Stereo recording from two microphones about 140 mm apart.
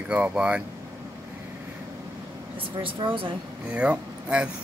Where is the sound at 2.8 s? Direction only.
40° right (ahead or behind).